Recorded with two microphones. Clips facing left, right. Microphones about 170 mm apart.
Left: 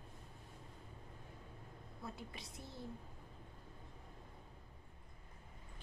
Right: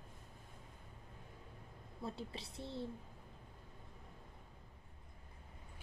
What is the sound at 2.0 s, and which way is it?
Speech, 30° right (ahead or behind).